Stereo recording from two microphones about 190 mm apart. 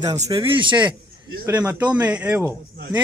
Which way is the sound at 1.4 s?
10° right (ahead or behind).